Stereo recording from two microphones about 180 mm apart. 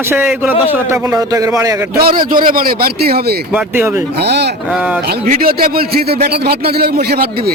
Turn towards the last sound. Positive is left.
turn(degrees=-55)  # may be behind; listen again after turning